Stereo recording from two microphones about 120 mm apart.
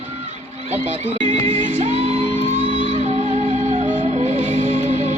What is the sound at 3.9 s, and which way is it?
Music, 65° right (ahead or behind).